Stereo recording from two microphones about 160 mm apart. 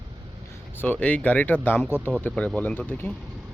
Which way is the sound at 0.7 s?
10° left (ahead or behind).